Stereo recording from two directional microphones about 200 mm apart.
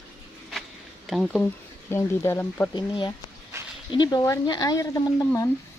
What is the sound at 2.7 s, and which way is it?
Speech, 25° left (ahead or behind).